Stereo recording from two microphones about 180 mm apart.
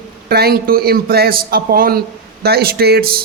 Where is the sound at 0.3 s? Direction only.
60° right (ahead or behind).